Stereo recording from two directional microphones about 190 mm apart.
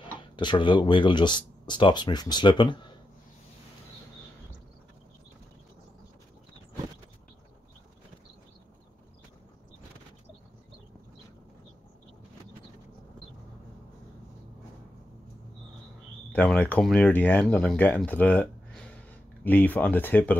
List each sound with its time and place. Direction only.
0.2 s speech: 25° left (ahead or behind)
16.3 s speech: 5° left (ahead or behind)